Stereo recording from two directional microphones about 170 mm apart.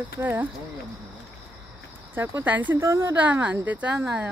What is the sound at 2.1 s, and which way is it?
Speech, 10° right (ahead or behind).